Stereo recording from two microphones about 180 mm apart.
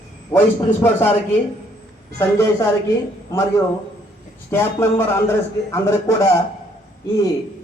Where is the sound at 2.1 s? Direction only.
15° left (ahead or behind).